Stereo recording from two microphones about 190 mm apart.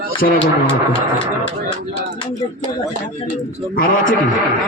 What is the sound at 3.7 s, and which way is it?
Speech, 45° left (ahead or behind).